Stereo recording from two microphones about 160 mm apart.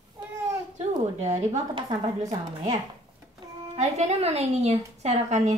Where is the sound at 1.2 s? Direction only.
45° right (ahead or behind).